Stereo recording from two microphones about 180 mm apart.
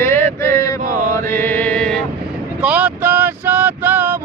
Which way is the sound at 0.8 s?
45° right (ahead or behind).